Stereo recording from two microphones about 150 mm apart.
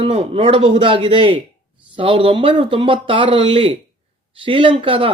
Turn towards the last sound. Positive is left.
turn(degrees=-35)  # may be behind; listen again after turning